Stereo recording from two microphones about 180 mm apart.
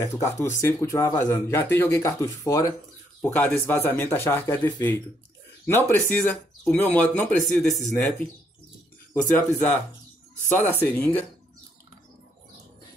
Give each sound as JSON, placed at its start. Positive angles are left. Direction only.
{"t": 0.0, "sound": "speech", "side_deg": 15}
{"t": 9.1, "sound": "speech", "side_deg": 10}